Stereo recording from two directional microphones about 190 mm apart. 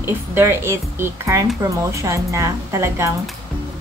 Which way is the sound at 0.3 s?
15° right (ahead or behind).